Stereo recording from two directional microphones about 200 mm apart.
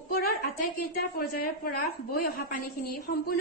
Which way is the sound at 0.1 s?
50° left (ahead or behind).